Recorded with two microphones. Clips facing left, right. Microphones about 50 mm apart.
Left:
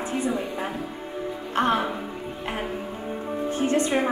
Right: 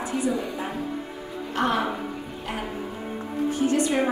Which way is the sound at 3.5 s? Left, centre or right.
Left.